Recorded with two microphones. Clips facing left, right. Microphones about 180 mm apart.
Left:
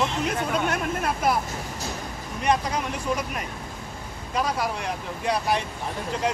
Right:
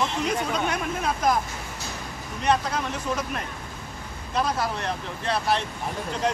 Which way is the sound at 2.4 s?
10° left (ahead or behind).